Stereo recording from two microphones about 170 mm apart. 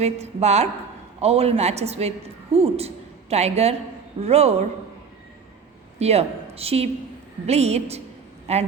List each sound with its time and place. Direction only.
0.0 s a woman's voice: 40° right (ahead or behind)
6.0 s a woman's voice: 40° right (ahead or behind)